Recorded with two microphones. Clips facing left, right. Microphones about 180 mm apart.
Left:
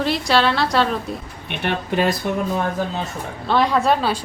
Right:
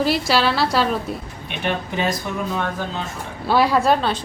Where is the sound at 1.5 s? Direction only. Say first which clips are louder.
Left 1 dB; 60° left (ahead or behind).